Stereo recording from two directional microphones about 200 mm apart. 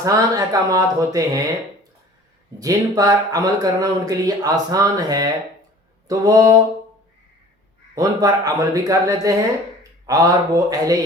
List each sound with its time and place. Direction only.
0.0 s speech: 15° right (ahead or behind)
2.6 s speech: 20° right (ahead or behind)
7.9 s speech: 15° right (ahead or behind)